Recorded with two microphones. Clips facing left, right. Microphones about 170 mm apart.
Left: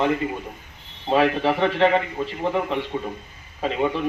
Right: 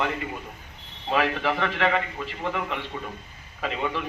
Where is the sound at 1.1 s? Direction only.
30° left (ahead or behind).